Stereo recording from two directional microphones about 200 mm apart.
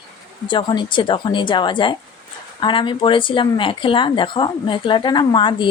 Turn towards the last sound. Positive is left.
turn(degrees=25)  # may be behind; listen again after turning